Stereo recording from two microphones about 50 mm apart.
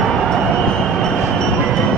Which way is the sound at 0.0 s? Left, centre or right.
Centre.